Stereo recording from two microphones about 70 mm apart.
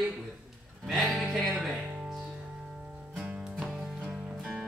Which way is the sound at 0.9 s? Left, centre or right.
Centre.